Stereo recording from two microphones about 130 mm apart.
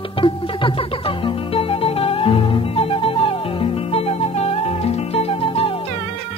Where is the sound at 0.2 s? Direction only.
40° left (ahead or behind).